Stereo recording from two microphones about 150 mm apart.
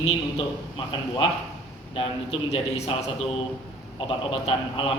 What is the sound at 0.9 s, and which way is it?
A man's voice, 35° left (ahead or behind).